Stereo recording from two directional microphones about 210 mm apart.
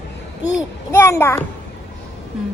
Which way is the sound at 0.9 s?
10° left (ahead or behind).